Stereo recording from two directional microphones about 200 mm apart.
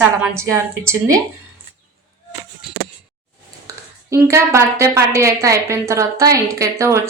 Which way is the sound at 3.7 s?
15° right (ahead or behind).